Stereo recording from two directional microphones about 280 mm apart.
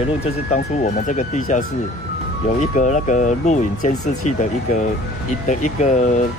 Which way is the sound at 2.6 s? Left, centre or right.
Left.